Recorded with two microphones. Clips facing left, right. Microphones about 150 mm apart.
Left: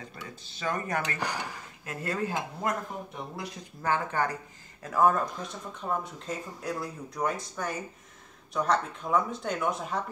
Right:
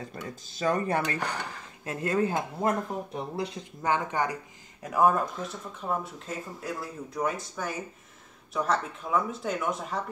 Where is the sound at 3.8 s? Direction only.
15° right (ahead or behind).